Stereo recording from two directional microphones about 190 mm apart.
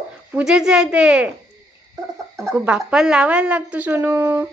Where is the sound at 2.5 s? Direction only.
5° right (ahead or behind).